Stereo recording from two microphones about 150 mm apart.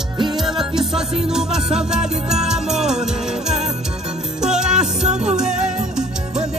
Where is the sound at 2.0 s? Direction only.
45° right (ahead or behind).